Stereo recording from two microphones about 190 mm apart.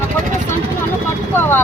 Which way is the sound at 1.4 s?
10° left (ahead or behind).